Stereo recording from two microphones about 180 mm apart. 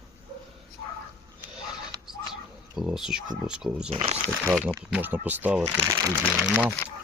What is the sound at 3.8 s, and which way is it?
Speech, 35° right (ahead or behind).